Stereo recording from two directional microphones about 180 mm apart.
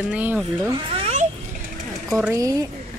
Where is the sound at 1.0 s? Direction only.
40° right (ahead or behind).